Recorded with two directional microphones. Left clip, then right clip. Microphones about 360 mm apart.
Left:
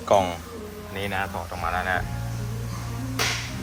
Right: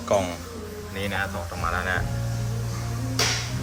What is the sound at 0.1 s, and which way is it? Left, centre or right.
Speech, centre.